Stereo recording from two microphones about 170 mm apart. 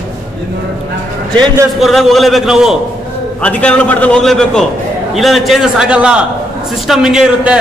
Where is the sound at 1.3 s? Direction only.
25° right (ahead or behind).